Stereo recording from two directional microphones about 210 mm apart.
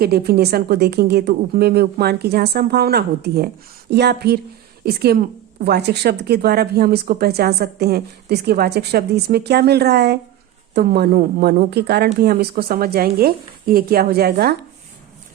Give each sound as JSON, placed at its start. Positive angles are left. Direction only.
{"t": 0.0, "sound": "a woman's voice", "side_deg": -50}